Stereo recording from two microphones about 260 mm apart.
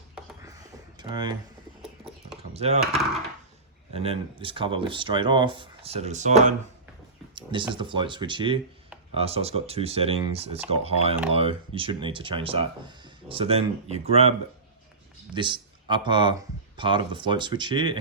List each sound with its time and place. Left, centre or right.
0.4 s a sound: centre
2.5 s speech: right
3.9 s speech: right
7.7 s speech: centre